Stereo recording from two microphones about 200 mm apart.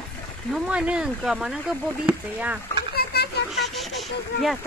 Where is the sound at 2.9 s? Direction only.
50° left (ahead or behind).